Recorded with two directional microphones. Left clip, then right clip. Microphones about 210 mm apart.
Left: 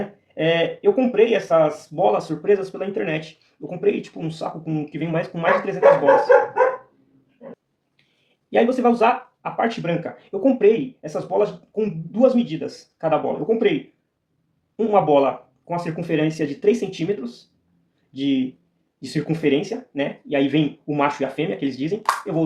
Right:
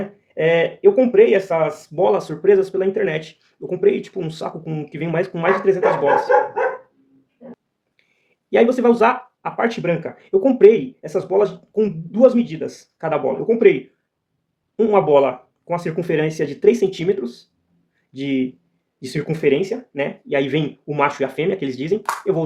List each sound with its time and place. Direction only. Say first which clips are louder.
0.3 s speech: right 3 dB; 45° right (ahead or behind)
8.4 s speech: right 3 dB; 45° right (ahead or behind)
14.8 s speech: right 2 dB; 45° right (ahead or behind)